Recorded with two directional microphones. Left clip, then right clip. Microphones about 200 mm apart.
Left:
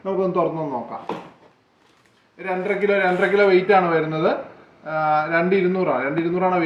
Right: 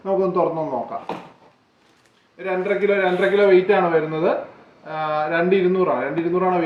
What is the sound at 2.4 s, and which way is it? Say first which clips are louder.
A man's voice: right 1 dB; 20° left (ahead or behind).